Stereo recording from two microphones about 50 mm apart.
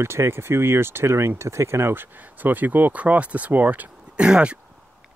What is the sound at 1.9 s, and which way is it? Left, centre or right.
Speech, right.